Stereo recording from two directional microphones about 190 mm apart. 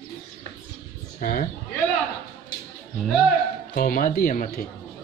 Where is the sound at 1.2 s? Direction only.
45° left (ahead or behind).